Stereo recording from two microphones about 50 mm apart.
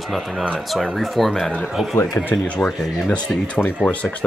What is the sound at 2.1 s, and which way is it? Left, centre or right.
Speech, left.